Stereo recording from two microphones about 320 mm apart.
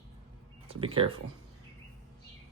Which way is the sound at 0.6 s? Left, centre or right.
Centre.